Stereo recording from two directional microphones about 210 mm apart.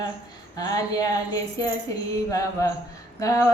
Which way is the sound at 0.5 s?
15° left (ahead or behind).